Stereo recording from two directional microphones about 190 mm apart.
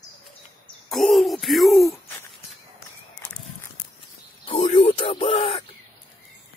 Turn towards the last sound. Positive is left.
turn(degrees=25)  # may be behind; listen again after turning